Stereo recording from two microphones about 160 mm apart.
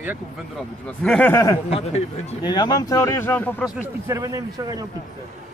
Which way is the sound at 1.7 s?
40° left (ahead or behind).